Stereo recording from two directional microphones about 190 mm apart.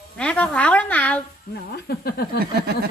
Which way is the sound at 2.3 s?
55° right (ahead or behind).